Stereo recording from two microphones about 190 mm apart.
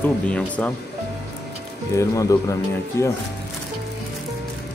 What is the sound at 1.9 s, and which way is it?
Speech, 15° left (ahead or behind).